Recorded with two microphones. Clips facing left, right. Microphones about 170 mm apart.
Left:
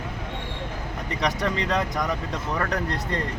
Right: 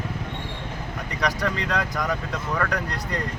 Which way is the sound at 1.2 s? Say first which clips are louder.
Even; 20° left (ahead or behind).